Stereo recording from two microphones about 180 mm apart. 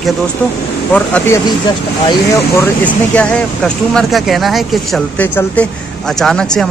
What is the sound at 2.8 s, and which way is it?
Speech, 10° left (ahead or behind).